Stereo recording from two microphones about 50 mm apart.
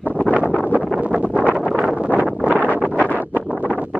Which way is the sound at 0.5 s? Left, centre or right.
Left.